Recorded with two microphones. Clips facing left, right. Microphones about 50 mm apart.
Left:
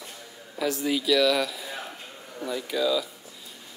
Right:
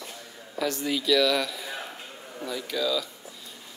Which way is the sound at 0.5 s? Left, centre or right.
Centre.